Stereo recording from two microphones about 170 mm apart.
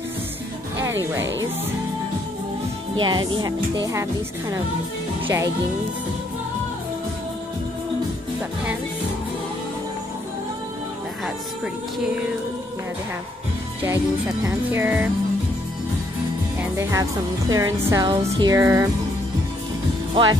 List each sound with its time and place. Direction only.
3.0 s speech: 30° right (ahead or behind)
13.8 s speech: 10° right (ahead or behind)
16.7 s speech: 20° right (ahead or behind)